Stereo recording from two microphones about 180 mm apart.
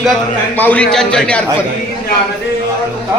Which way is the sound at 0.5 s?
10° left (ahead or behind).